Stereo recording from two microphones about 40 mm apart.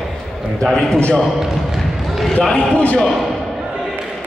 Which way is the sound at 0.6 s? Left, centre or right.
Centre.